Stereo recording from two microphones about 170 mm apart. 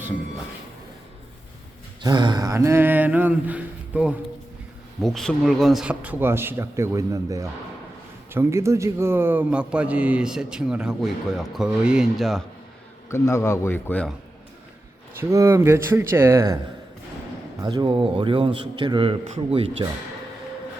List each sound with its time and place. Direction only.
2.0 s a man's voice: 25° right (ahead or behind); by 12.4 s centre (ahead or behind)
13.1 s speech: 15° left (ahead or behind)
15.2 s a man's voice: 15° right (ahead or behind)
17.6 s a man's voice: 25° right (ahead or behind)